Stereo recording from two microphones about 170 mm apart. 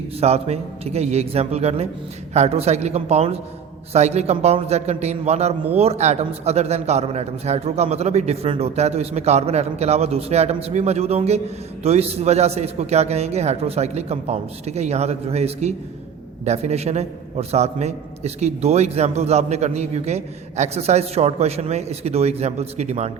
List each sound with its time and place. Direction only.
0.2 s a man's voice: 40° right (ahead or behind)